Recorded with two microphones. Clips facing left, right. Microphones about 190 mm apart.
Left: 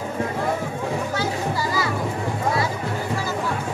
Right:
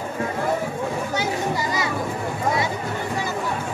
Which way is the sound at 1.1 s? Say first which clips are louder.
Right 1 dB; 20° right (ahead or behind).